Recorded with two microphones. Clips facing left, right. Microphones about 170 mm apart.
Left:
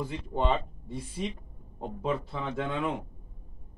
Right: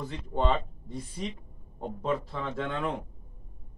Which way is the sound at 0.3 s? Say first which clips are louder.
Right 1 dB; 10° left (ahead or behind).